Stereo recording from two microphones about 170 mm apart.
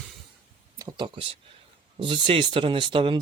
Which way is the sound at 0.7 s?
25° right (ahead or behind).